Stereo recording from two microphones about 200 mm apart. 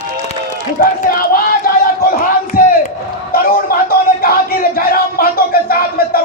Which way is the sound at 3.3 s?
45° left (ahead or behind).